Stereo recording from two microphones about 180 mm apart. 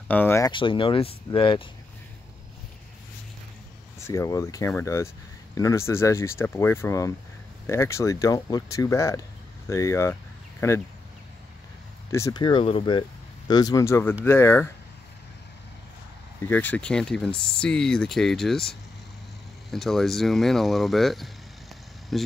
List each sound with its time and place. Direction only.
0.1 s speech: 10° left (ahead or behind)
0.5 s speech: 30° left (ahead or behind)
4.1 s speech: 15° left (ahead or behind)
12.1 s speech: 15° left (ahead or behind)
16.4 s speech: 10° left (ahead or behind)
19.7 s speech: centre (ahead or behind)